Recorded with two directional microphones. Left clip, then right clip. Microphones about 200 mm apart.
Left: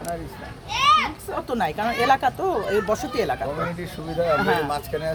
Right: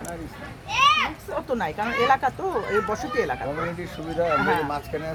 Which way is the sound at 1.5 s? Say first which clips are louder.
Left 3 dB; 65° left (ahead or behind).